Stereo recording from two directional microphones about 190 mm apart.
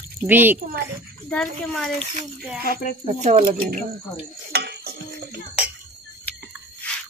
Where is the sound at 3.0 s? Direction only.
35° right (ahead or behind).